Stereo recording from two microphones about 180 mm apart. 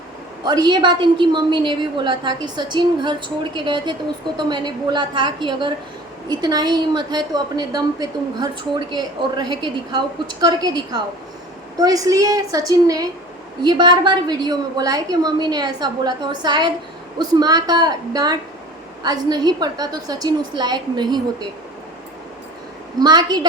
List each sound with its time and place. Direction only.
0.4 s a woman's voice: 25° right (ahead or behind)
23.0 s a woman's voice: 25° right (ahead or behind)